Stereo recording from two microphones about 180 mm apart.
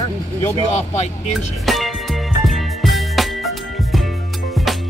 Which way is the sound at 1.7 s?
Centre (ahead or behind).